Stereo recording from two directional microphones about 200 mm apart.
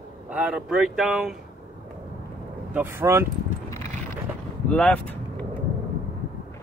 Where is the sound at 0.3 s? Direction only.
5° right (ahead or behind).